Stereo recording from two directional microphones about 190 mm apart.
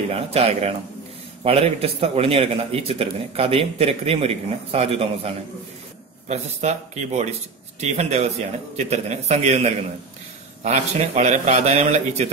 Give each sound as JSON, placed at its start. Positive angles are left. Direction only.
{"t": 0.1, "sound": "a man's voice", "side_deg": -30}